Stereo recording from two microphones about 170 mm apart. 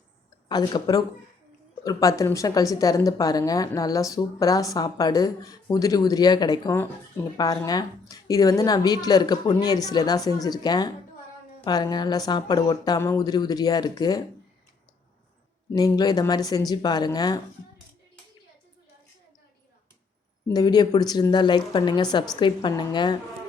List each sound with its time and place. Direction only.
0.4 s speech: 25° left (ahead or behind)
15.7 s speech: 25° left (ahead or behind)
20.5 s speech: 25° left (ahead or behind)